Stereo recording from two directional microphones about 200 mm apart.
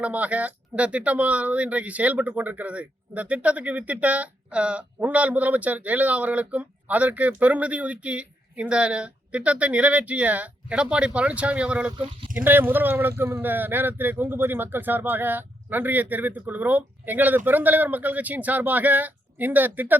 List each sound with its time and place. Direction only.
0.0 s speech: 5° right (ahead or behind)
11.9 s speech: 25° right (ahead or behind)
12.4 s speech: 10° right (ahead or behind)